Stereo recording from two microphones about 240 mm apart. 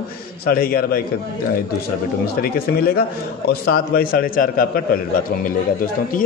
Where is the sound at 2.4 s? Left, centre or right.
Left.